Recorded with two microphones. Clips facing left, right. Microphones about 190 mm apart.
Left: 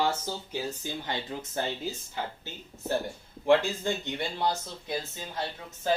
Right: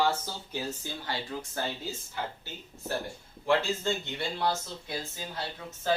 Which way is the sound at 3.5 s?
15° left (ahead or behind).